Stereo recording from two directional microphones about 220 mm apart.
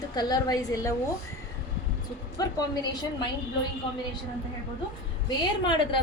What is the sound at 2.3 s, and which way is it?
Speech, 15° left (ahead or behind).